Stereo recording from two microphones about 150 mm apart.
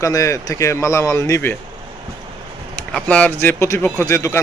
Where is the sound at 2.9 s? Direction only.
5° left (ahead or behind).